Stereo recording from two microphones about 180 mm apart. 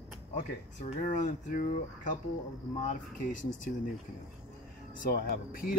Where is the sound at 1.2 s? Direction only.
45° left (ahead or behind).